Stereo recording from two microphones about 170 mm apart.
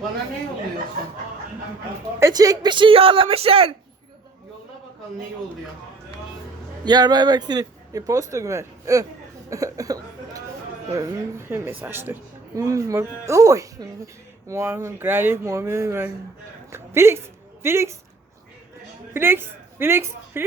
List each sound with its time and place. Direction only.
2.1 s speech: 20° right (ahead or behind)
6.8 s a woman's voice: 25° right (ahead or behind)
19.1 s a woman's voice: 15° right (ahead or behind)